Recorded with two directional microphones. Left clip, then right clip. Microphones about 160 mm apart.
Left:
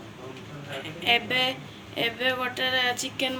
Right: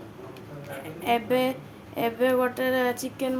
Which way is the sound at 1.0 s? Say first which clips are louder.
Left 1 dB; 60° right (ahead or behind).